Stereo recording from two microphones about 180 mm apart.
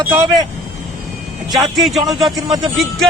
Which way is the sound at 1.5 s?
Centre (ahead or behind).